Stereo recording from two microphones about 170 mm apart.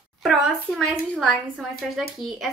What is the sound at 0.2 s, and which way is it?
A woman's voice, 5° left (ahead or behind).